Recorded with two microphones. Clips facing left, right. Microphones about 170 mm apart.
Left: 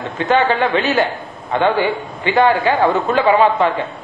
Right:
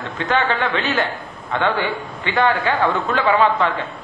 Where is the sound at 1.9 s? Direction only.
Centre (ahead or behind).